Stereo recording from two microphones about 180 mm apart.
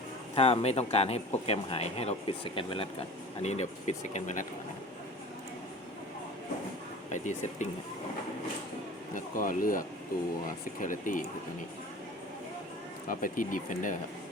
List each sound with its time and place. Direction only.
0.3 s speech: 35° left (ahead or behind)
7.1 s speech: 45° left (ahead or behind)
9.1 s speech: 50° left (ahead or behind)
13.1 s speech: 50° left (ahead or behind)